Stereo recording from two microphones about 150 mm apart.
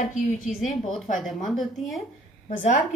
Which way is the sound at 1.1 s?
Centre (ahead or behind).